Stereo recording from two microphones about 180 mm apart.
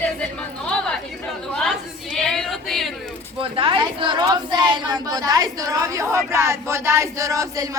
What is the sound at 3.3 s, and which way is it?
A woman's voice, 30° right (ahead or behind).